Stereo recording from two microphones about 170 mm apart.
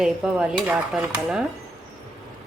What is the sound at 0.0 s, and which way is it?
Dishes, 5° right (ahead or behind).